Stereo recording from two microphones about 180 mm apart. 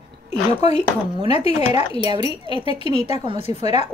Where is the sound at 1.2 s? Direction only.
35° left (ahead or behind).